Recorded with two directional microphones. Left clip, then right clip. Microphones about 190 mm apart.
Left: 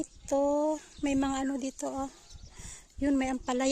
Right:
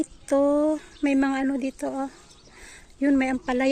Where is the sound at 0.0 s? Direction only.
5° left (ahead or behind).